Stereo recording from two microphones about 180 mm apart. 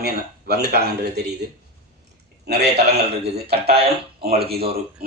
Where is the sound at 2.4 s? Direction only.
65° right (ahead or behind).